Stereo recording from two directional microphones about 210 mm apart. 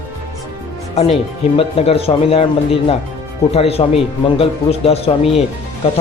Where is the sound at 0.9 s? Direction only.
30° left (ahead or behind).